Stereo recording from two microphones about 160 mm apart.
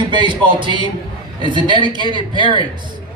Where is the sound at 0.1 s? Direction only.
30° right (ahead or behind).